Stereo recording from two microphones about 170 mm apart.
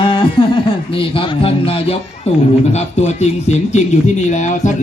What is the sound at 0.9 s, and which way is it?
A man's voice, 30° left (ahead or behind).